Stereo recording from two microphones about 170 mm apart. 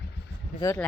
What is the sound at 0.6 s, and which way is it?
Speech, 25° left (ahead or behind).